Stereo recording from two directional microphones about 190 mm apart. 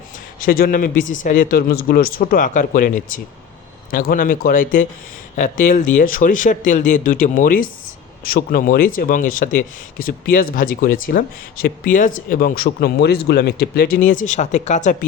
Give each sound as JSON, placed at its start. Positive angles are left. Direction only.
{"t": 0.3, "sound": "speech", "side_deg": 50}